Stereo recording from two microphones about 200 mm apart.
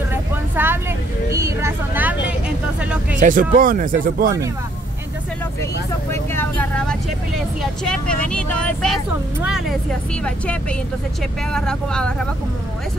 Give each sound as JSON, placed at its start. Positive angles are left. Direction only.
{"t": 0.1, "sound": "vehicle", "side_deg": -10}
{"t": 3.2, "sound": "speech", "side_deg": -45}
{"t": 5.6, "sound": "speech", "side_deg": 10}